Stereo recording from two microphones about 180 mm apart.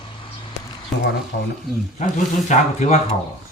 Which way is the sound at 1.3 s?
55° left (ahead or behind).